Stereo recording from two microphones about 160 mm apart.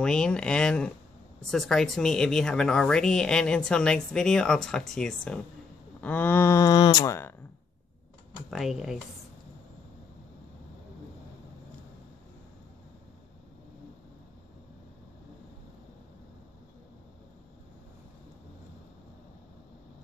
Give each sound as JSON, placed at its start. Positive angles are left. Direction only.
{"t": 0.0, "sound": "speech", "side_deg": 5}
{"t": 8.5, "sound": "speech", "side_deg": 0}